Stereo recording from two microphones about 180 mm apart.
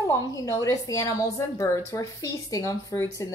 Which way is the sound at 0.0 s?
20° left (ahead or behind).